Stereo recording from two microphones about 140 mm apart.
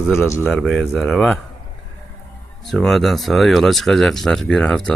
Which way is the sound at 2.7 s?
5° left (ahead or behind).